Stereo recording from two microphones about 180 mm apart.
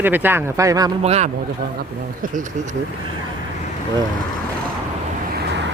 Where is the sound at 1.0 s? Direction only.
35° right (ahead or behind).